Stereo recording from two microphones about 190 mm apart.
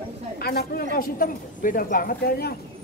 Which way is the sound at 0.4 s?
55° left (ahead or behind).